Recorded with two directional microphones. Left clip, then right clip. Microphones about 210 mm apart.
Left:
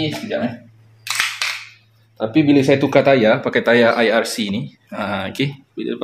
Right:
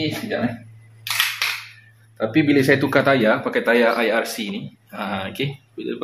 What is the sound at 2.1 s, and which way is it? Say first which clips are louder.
Speech: left 3 dB; 15° left (ahead or behind).